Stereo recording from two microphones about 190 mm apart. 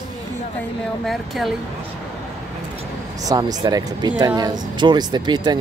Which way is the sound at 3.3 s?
20° right (ahead or behind).